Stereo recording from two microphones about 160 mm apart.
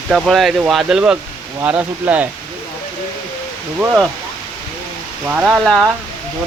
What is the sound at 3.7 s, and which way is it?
Speech, 5° right (ahead or behind).